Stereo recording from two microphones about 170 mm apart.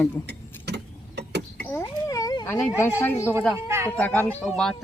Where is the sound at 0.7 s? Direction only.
75° right (ahead or behind).